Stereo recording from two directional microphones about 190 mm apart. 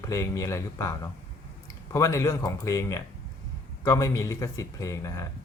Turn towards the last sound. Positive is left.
turn(degrees=15)  # may be behind; listen again after turning